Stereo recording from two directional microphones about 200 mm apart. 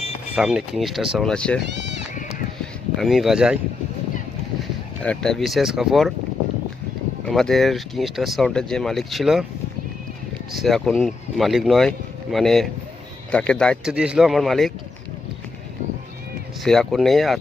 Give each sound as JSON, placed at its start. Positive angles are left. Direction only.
{"t": 0.3, "sound": "speech", "side_deg": -5}
{"t": 1.7, "sound": "speech", "side_deg": -60}
{"t": 3.0, "sound": "speech", "side_deg": 0}
{"t": 5.0, "sound": "speech", "side_deg": 0}
{"t": 7.3, "sound": "speech", "side_deg": 0}
{"t": 10.5, "sound": "speech", "side_deg": 0}
{"t": 16.6, "sound": "speech", "side_deg": 0}